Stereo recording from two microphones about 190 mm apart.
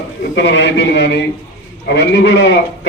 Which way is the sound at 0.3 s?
70° left (ahead or behind).